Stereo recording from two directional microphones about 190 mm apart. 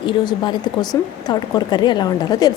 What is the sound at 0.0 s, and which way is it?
Speech, 25° left (ahead or behind).